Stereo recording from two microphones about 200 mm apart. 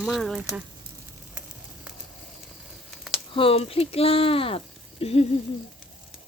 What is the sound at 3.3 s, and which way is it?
Speech, 25° left (ahead or behind).